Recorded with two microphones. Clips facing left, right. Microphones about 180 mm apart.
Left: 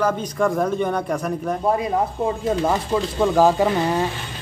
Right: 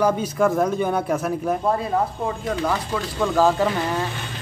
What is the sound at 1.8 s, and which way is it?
Speech, 25° left (ahead or behind).